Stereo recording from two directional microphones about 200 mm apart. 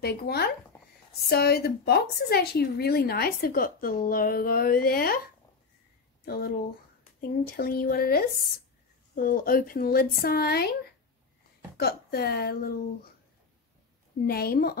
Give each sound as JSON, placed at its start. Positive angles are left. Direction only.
{"t": 0.0, "sound": "speech", "side_deg": 50}
{"t": 6.2, "sound": "speech", "side_deg": 50}
{"t": 14.2, "sound": "speech", "side_deg": 50}